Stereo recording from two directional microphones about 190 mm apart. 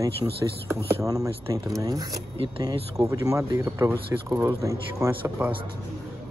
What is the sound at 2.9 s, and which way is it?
Speech, 15° right (ahead or behind).